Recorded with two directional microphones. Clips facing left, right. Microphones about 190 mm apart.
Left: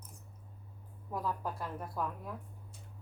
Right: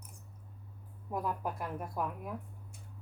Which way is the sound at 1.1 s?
15° right (ahead or behind).